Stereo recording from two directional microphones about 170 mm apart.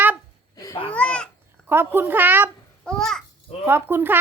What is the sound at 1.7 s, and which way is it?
Speech, 15° right (ahead or behind).